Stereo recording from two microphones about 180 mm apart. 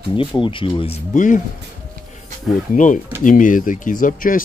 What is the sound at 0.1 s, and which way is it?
Speech, 25° left (ahead or behind).